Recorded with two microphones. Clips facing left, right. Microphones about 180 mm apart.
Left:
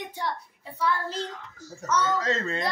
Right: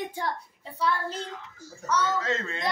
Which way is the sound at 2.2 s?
35° left (ahead or behind).